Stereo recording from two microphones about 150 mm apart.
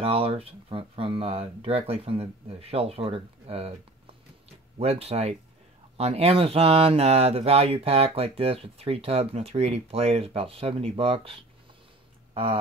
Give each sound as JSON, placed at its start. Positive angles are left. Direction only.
{"t": 0.0, "sound": "speech", "side_deg": -40}
{"t": 4.7, "sound": "speech", "side_deg": -40}